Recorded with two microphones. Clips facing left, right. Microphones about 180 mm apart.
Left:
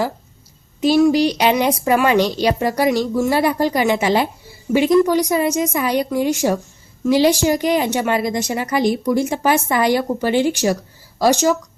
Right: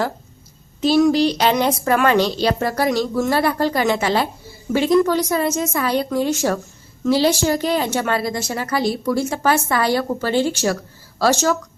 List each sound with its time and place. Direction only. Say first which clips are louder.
0.8 s speech: left 1 dB; 10° left (ahead or behind)